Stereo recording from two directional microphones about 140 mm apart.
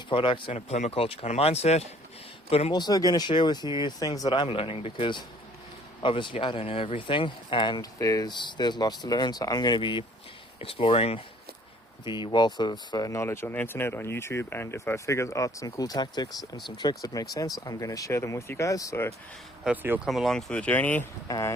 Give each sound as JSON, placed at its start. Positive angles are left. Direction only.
{"t": 0.1, "sound": "speech", "side_deg": 35}
{"t": 0.5, "sound": "speech", "side_deg": 50}
{"t": 2.7, "sound": "speech", "side_deg": 30}
{"t": 4.4, "sound": "speech", "side_deg": 40}
{"t": 12.0, "sound": "speech", "side_deg": 30}
{"t": 19.6, "sound": "speech", "side_deg": -15}
{"t": 20.1, "sound": "speech", "side_deg": 0}
{"t": 21.2, "sound": "speech", "side_deg": 25}